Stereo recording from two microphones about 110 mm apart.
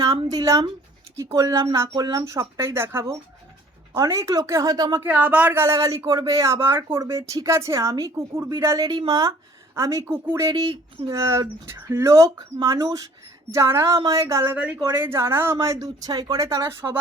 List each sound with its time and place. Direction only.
0.3 s speech: 30° right (ahead or behind)
5.0 s speech: 15° right (ahead or behind)
10.5 s speech: 40° right (ahead or behind)
11.2 s speech: 30° right (ahead or behind)
12.1 s speech: 35° right (ahead or behind)